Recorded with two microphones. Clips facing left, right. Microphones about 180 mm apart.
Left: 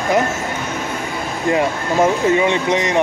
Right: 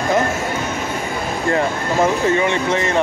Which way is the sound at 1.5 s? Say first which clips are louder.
Left 2 dB; 15° left (ahead or behind).